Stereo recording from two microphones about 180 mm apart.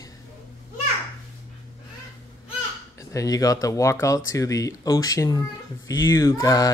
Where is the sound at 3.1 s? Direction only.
20° left (ahead or behind).